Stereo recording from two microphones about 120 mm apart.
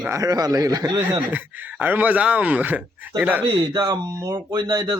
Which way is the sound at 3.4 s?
40° right (ahead or behind).